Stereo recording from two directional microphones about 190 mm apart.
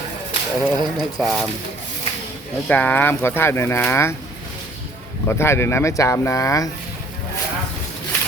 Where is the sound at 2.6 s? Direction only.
10° left (ahead or behind).